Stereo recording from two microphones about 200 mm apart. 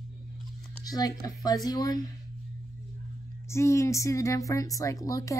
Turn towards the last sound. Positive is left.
turn(degrees=15)  # may be behind; listen again after turning